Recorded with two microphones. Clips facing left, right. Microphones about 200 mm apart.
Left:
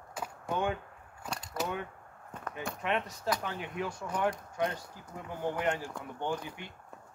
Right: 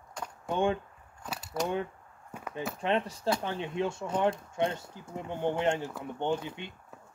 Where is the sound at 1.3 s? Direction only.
5° right (ahead or behind).